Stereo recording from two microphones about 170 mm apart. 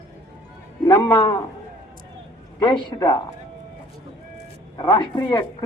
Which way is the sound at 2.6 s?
25° left (ahead or behind).